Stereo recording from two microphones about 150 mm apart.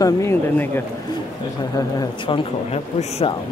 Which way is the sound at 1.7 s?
30° left (ahead or behind).